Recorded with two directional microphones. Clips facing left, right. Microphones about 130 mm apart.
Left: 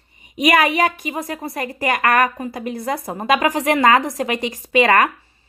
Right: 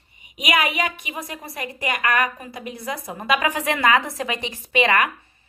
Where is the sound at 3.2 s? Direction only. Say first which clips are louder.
Left 4 dB; 40° left (ahead or behind).